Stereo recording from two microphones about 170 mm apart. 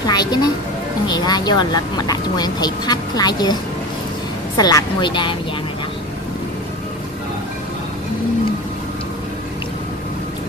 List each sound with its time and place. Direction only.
0.0 s speech: 25° left (ahead or behind)
4.6 s speech: 25° left (ahead or behind)